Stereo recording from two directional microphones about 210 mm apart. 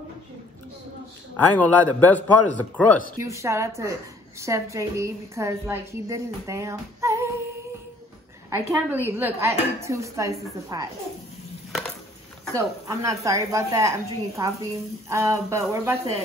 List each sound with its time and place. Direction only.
1.5 s a man's voice: 10° left (ahead or behind)
3.2 s a woman's voice: 15° right (ahead or behind)
8.5 s a woman's voice: 10° right (ahead or behind)
12.5 s a woman's voice: 15° right (ahead or behind)